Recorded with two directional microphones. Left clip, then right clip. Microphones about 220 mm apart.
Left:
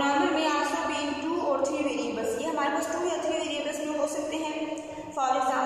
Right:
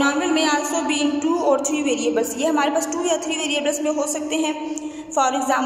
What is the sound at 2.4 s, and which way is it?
A woman's voice, 45° right (ahead or behind).